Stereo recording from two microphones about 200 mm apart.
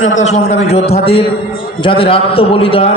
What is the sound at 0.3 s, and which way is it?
A man's voice, 35° left (ahead or behind).